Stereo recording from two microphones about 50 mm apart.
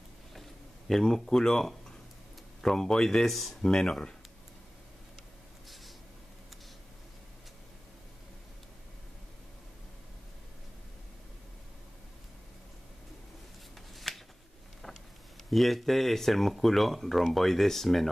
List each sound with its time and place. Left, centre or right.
0.3 s a sound: centre
2.6 s speech: centre
13.9 s shuffling cards: centre
15.5 s speech: centre